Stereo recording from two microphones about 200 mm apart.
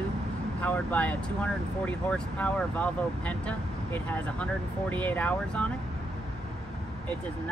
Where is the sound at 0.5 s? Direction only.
10° left (ahead or behind).